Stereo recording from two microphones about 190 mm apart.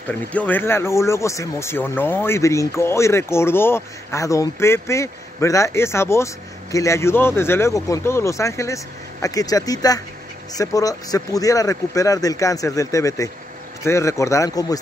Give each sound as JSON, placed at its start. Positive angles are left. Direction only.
{"t": 0.1, "sound": "speech", "side_deg": 10}